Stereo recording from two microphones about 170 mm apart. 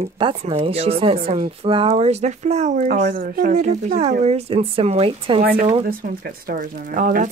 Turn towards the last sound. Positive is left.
turn(degrees=-50)  # may be behind; listen again after turning